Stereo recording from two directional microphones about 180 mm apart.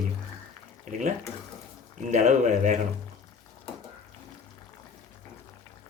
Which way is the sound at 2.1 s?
40° right (ahead or behind).